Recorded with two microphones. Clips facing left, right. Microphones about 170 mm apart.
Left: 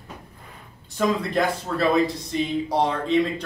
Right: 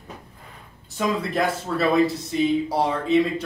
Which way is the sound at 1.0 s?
Centre (ahead or behind).